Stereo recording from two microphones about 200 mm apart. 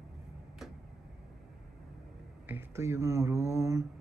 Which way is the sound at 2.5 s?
15° right (ahead or behind).